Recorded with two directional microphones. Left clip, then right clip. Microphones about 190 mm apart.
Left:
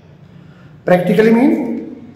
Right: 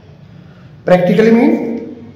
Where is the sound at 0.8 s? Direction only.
15° left (ahead or behind).